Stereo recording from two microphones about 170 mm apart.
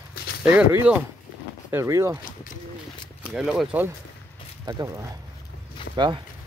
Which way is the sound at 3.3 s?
Centre (ahead or behind).